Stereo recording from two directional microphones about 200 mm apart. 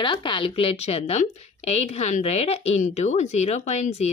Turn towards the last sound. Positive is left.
turn(degrees=35)  # may be behind; listen again after turning